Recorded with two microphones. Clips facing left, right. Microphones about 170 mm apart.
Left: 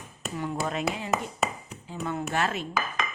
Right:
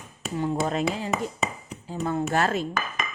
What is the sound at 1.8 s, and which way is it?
Speech, 35° right (ahead or behind).